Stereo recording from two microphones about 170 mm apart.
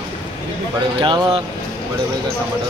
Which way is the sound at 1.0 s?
25° right (ahead or behind).